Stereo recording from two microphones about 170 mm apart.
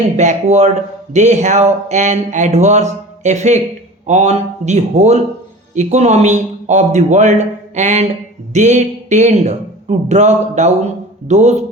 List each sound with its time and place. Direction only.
0.2 s speech: 40° right (ahead or behind)